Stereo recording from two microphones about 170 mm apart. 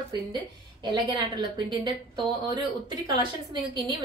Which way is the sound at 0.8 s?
25° right (ahead or behind).